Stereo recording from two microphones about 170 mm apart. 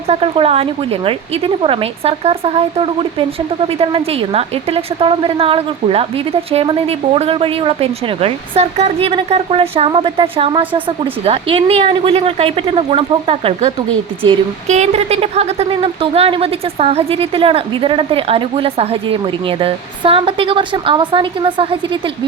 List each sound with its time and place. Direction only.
0.1 s a woman's voice: 35° right (ahead or behind)